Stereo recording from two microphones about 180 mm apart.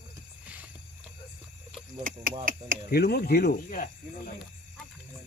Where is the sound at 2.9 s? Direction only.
60° left (ahead or behind).